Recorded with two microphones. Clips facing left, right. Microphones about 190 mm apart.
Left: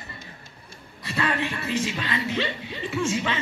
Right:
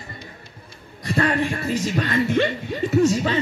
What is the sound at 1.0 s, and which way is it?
A man's voice, 45° right (ahead or behind).